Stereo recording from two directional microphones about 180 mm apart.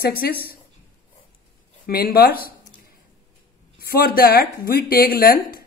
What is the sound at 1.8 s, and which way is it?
Speech, 55° left (ahead or behind).